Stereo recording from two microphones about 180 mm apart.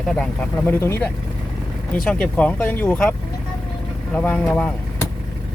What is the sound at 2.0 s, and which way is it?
Speech, 5° left (ahead or behind).